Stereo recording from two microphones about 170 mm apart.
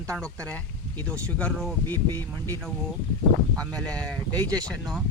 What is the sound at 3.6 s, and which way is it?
Speech, 5° left (ahead or behind).